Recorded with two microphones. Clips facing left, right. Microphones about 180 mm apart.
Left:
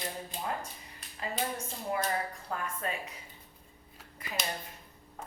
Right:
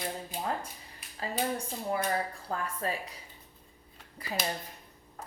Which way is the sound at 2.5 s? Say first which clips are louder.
Right 2 dB; 35° right (ahead or behind).